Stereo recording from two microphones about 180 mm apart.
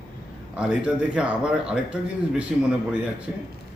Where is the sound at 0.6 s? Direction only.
5° right (ahead or behind).